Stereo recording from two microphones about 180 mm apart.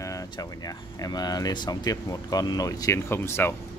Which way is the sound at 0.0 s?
20° left (ahead or behind).